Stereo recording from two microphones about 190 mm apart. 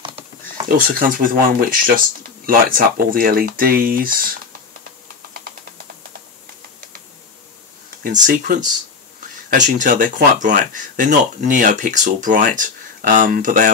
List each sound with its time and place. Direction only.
0.0 s typing: 25° right (ahead or behind)
0.7 s speech: 50° right (ahead or behind)
8.0 s speech: 45° right (ahead or behind)